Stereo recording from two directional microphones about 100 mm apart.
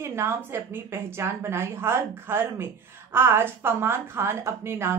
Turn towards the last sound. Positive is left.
turn(degrees=-25)  # may be behind; listen again after turning